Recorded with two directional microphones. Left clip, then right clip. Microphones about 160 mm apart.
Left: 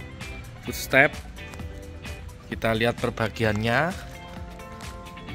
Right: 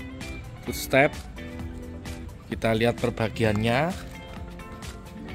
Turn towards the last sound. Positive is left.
turn(degrees=-5)  # may be behind; listen again after turning